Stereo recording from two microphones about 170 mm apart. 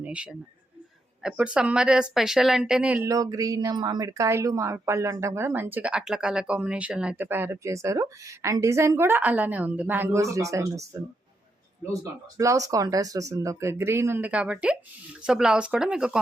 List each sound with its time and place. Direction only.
0.0 s a woman's voice: 5° right (ahead or behind)
3.1 s a woman's voice: 20° right (ahead or behind)
12.4 s a woman's voice: 20° right (ahead or behind)